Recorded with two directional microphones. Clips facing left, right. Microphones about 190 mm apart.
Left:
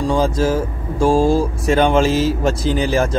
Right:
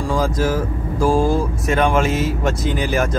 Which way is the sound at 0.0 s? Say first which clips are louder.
Left 3 dB; 25° left (ahead or behind).